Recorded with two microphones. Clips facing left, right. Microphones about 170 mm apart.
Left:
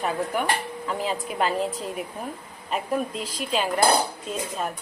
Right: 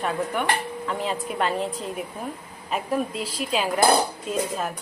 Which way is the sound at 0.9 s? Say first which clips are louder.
Even; centre (ahead or behind).